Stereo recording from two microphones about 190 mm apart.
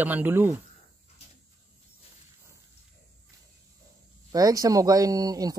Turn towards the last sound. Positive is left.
turn(degrees=-20)  # may be behind; listen again after turning